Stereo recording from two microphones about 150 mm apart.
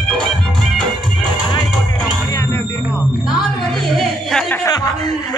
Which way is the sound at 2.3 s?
20° left (ahead or behind).